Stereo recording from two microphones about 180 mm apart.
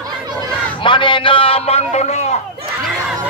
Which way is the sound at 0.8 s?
25° left (ahead or behind).